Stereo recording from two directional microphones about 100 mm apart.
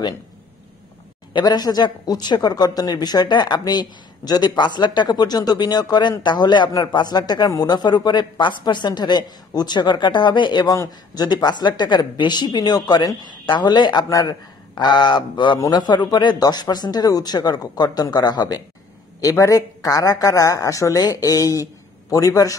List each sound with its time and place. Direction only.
1.3 s speech: 45° left (ahead or behind)
10.7 s speech: 40° left (ahead or behind)
19.2 s a woman's voice: 30° left (ahead or behind)